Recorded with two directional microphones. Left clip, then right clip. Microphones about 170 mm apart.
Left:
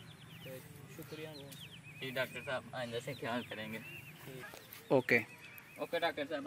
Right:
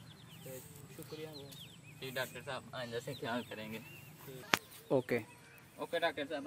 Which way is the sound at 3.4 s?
25° right (ahead or behind).